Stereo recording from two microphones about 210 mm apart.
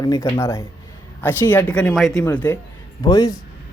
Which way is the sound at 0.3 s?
15° left (ahead or behind).